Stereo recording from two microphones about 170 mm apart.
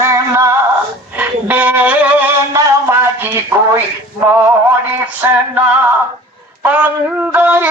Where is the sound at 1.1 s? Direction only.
10° right (ahead or behind).